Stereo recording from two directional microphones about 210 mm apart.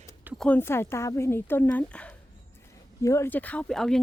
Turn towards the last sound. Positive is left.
turn(degrees=0)  # may be behind; listen again after turning